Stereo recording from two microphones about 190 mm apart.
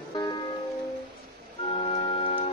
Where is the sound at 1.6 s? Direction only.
30° left (ahead or behind).